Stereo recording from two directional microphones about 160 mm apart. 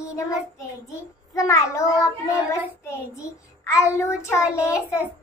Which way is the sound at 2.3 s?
20° left (ahead or behind).